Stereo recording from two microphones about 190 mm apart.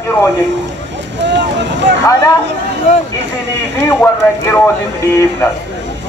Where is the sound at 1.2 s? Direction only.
65° right (ahead or behind).